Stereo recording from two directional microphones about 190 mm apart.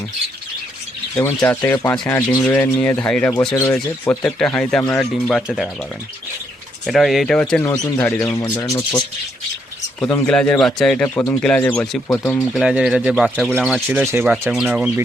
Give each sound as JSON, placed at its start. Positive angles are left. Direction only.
{"t": 1.1, "sound": "speech", "side_deg": 10}
{"t": 6.8, "sound": "speech", "side_deg": 0}
{"t": 7.6, "sound": "speech", "side_deg": 15}